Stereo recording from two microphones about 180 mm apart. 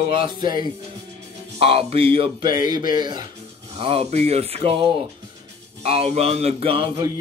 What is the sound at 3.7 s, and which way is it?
Speech, 35° right (ahead or behind).